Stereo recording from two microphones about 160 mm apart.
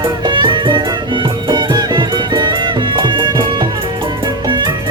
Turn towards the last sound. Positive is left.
turn(degrees=-30)  # may be behind; listen again after turning